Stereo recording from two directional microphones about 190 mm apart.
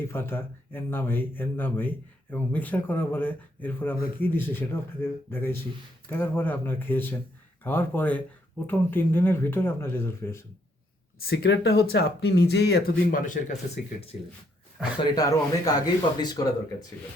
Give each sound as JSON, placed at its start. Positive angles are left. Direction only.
{"t": 0.1, "sound": "speech", "side_deg": 10}
{"t": 11.3, "sound": "speech", "side_deg": 70}
{"t": 15.0, "sound": "speech", "side_deg": 20}